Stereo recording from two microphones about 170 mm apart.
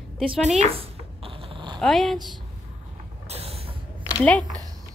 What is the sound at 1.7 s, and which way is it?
Speech, centre (ahead or behind).